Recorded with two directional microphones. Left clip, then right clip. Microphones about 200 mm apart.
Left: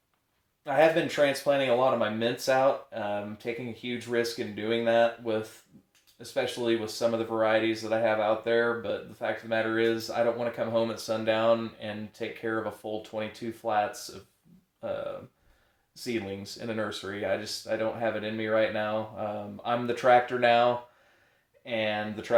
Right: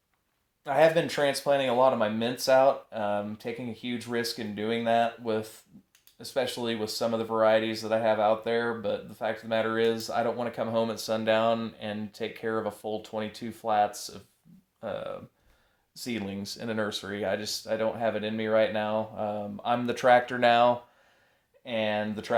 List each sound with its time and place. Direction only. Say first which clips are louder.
0.6 s speech: right 1 dB; 30° right (ahead or behind)